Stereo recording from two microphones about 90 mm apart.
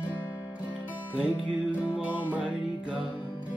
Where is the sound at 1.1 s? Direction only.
10° right (ahead or behind).